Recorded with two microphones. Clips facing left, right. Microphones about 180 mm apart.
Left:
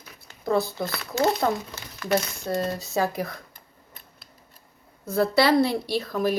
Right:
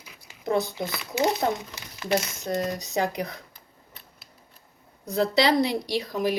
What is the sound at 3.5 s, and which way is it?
Tick-tock, 45° left (ahead or behind).